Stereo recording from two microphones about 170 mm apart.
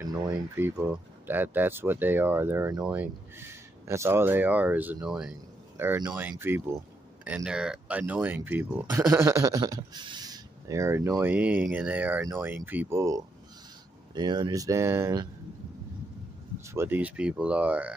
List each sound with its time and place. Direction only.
0.0 s a sound: 20° right (ahead or behind)
0.6 s speech: 10° right (ahead or behind)
5.8 s speech: 20° right (ahead or behind)
16.6 s speech: 15° right (ahead or behind)